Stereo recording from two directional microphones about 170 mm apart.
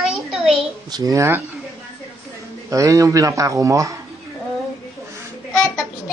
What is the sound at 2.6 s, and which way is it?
Speech, 20° right (ahead or behind).